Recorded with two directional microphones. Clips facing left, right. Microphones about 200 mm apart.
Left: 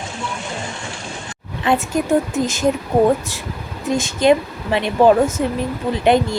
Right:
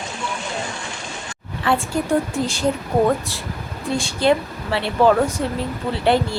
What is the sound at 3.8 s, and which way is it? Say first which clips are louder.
Speech: left 3 dB; 20° left (ahead or behind).